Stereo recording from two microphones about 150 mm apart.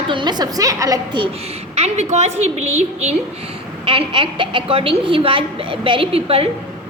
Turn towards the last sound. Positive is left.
turn(degrees=-40)  # may be behind; listen again after turning